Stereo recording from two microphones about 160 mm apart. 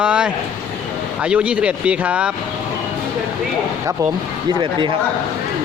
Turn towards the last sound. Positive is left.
turn(degrees=-30)  # may be behind; listen again after turning